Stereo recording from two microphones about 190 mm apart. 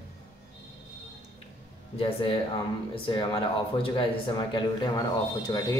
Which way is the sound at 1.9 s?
30° left (ahead or behind).